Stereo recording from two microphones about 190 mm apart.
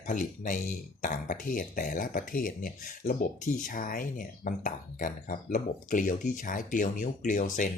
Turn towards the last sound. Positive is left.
turn(degrees=40)  # may be behind; listen again after turning